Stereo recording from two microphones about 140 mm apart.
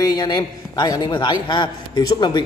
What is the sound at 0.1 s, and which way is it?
A man's voice, 30° left (ahead or behind).